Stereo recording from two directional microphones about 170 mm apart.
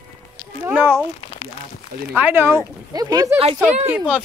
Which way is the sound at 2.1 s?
10° right (ahead or behind).